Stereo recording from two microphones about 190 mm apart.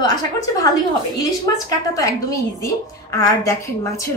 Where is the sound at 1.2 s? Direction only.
15° left (ahead or behind).